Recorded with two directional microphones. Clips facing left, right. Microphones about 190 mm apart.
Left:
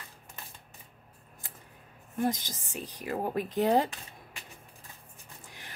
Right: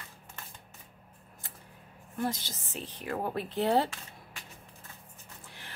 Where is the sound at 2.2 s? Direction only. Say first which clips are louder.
Left 3 dB; 15° left (ahead or behind).